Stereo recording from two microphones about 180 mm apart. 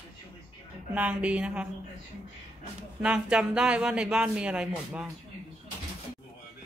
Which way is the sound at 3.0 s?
5° right (ahead or behind).